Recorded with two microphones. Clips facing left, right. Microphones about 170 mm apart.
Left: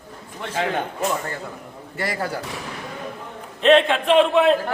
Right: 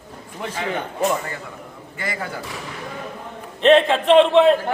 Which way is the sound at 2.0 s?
40° left (ahead or behind).